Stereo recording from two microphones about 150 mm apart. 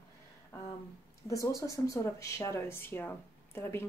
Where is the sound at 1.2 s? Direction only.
20° left (ahead or behind).